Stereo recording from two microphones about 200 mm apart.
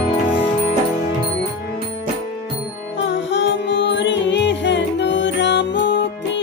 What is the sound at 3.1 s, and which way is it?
Music, 65° left (ahead or behind).